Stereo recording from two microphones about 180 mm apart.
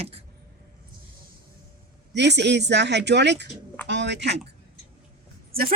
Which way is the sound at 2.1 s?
75° right (ahead or behind).